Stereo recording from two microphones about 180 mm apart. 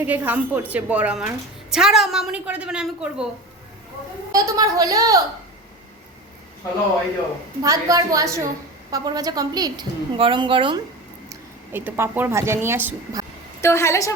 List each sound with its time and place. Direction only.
0.0 s a woman's voice: 10° right (ahead or behind)
4.3 s a woman's voice: 20° right (ahead or behind)
7.6 s a woman's voice: 20° right (ahead or behind)
11.3 s a woman's voice: 10° right (ahead or behind)
13.6 s a woman's voice: 15° left (ahead or behind)